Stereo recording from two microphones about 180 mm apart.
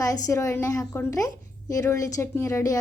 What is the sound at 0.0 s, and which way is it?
A woman's voice, 20° left (ahead or behind).